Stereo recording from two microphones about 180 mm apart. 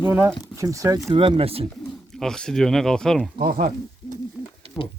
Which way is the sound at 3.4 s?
55° right (ahead or behind).